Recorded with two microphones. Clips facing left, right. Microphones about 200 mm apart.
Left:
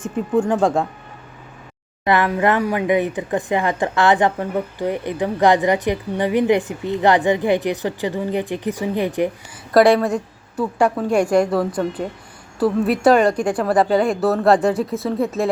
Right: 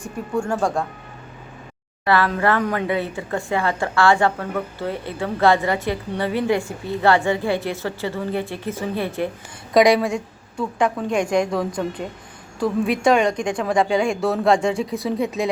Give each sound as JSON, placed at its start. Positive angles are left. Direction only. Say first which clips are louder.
{"t": 0.0, "sound": "speech", "louder": "left 6 dB", "side_deg": 20}
{"t": 2.0, "sound": "speech", "louder": "left 2 dB", "side_deg": 15}
{"t": 10.6, "sound": "a woman's voice", "louder": "left 3 dB", "side_deg": 5}